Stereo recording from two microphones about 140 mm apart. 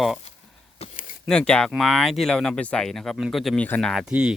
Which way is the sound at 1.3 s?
5° left (ahead or behind).